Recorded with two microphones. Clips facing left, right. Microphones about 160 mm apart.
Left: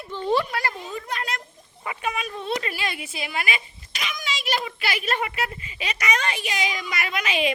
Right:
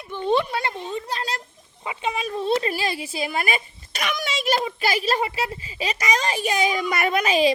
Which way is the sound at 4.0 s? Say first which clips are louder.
Right 5 dB; 50° right (ahead or behind).